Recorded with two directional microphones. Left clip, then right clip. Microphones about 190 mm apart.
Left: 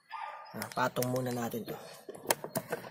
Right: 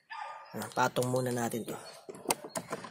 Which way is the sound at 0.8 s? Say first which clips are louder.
Right 2 dB; 30° right (ahead or behind).